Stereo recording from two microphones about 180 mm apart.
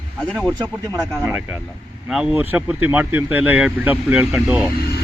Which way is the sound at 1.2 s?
10° right (ahead or behind).